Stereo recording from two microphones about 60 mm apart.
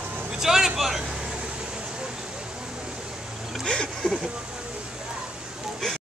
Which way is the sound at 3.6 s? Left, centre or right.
Centre.